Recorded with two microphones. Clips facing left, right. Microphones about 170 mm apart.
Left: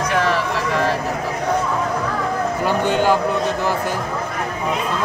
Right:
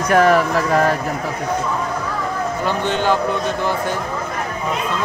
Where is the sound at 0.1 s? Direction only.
50° right (ahead or behind).